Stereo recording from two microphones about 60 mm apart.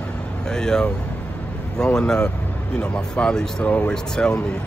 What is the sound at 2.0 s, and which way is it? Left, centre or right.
Speech, centre.